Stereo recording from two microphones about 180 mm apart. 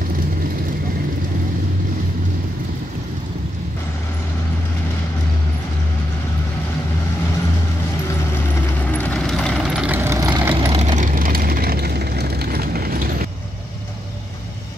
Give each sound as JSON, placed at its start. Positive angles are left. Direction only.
{"t": 8.9, "sound": "vehicle", "side_deg": 5}